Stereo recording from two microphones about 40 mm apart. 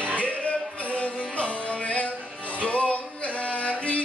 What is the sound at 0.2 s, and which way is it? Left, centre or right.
Music, left.